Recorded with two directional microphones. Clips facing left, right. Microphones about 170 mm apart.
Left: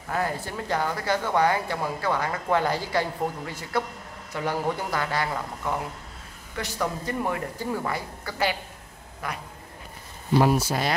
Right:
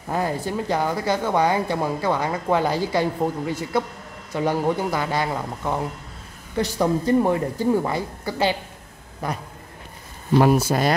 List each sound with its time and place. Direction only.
0.1 s a man's voice: 15° right (ahead or behind); by 9.4 s 35° right (ahead or behind)
10.4 s speech: 50° right (ahead or behind)